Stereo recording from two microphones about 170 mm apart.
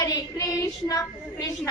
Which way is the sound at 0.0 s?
25° left (ahead or behind).